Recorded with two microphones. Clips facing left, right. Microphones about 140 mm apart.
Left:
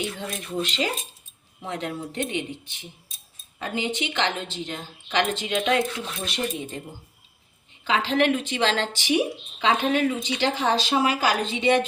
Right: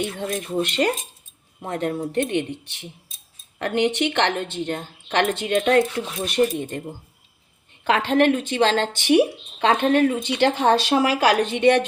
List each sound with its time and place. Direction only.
0.0 s a woman's voice: 50° right (ahead or behind)
7.9 s a woman's voice: 60° right (ahead or behind)